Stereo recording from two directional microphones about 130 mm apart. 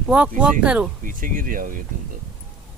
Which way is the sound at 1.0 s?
90° right.